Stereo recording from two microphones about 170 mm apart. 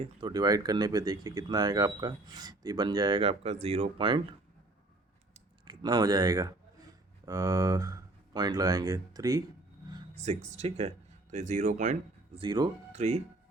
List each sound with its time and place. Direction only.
0.0 s speech: 25° right (ahead or behind)
5.6 s speech: 20° right (ahead or behind)
10.2 s speech: 40° right (ahead or behind)
12.4 s speech: 25° right (ahead or behind)
12.9 s music: 40° right (ahead or behind)